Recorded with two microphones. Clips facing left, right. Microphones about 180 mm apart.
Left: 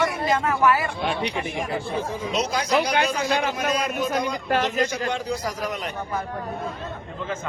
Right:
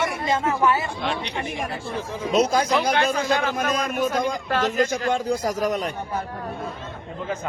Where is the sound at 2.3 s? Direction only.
50° right (ahead or behind).